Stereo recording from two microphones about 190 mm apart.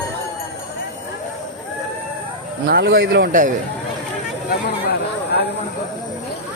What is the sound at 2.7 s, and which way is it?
Speech, 55° right (ahead or behind).